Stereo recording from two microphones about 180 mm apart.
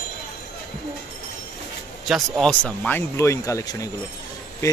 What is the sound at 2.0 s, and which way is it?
Speech, centre (ahead or behind).